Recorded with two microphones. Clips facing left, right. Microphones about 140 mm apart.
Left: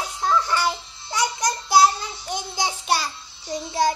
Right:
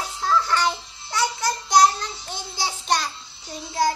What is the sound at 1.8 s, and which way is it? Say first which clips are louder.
Child singing: even; 10° left (ahead or behind).